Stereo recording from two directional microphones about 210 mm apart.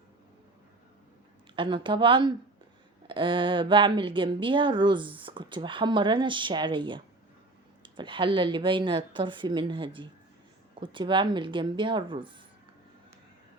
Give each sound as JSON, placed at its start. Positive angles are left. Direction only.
{"t": 1.5, "sound": "speech", "side_deg": -25}